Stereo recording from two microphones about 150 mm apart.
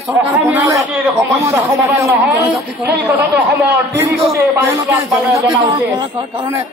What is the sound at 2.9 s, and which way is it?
Speech, 10° right (ahead or behind).